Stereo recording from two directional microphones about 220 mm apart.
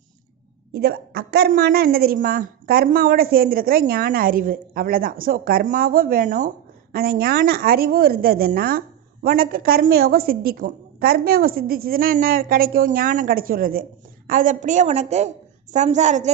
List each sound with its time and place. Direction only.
0.7 s a woman's voice: 45° right (ahead or behind)